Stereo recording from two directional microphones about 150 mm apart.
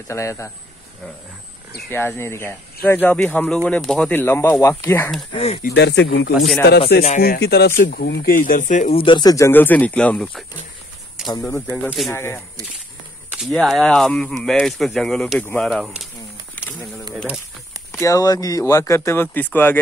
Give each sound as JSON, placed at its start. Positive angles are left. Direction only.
{"t": 0.1, "sound": "speech", "side_deg": 20}
{"t": 1.9, "sound": "speech", "side_deg": 15}
{"t": 4.2, "sound": "speech", "side_deg": 15}
{"t": 5.3, "sound": "speech", "side_deg": 40}
{"t": 5.6, "sound": "speech", "side_deg": 85}
{"t": 6.8, "sound": "speech", "side_deg": 40}
{"t": 7.2, "sound": "speech", "side_deg": 85}
{"t": 8.9, "sound": "speech", "side_deg": 30}
{"t": 11.2, "sound": "a sound", "side_deg": -5}
{"t": 12.1, "sound": "speech", "side_deg": 15}
{"t": 13.3, "sound": "speech", "side_deg": 0}
{"t": 17.9, "sound": "speech", "side_deg": 20}